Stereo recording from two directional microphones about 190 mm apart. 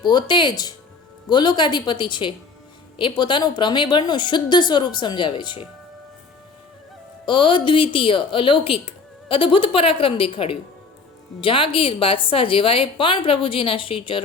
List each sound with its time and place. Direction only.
0.0 s a woman's voice: 25° left (ahead or behind)
7.3 s a woman's voice: 25° left (ahead or behind)